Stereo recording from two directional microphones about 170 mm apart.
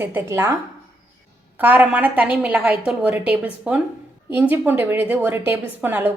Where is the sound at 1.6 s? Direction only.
10° right (ahead or behind).